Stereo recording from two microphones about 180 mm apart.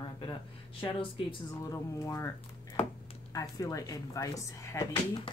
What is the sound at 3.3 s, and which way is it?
Speech, 20° left (ahead or behind).